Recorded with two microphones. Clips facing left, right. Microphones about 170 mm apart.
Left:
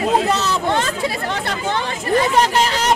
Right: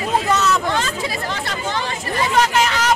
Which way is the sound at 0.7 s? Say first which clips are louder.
Left 2 dB; 60° left (ahead or behind).